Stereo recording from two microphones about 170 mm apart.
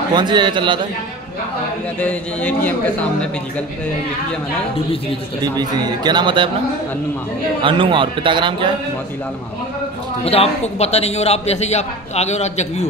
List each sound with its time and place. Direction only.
0.1 s speech: 25° right (ahead or behind)
2.0 s a man's voice: 10° left (ahead or behind)
5.4 s speech: 25° right (ahead or behind)
7.6 s speech: 30° right (ahead or behind)
10.2 s a man's voice: 35° left (ahead or behind)